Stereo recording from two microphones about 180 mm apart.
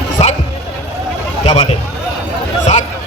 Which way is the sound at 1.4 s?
35° left (ahead or behind).